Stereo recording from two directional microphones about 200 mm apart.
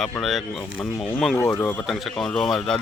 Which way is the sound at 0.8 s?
15° left (ahead or behind).